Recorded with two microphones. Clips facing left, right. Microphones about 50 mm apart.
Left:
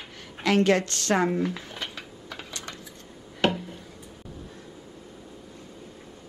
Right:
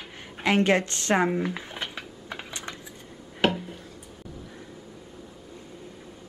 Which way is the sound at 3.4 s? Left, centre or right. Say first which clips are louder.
Even; centre.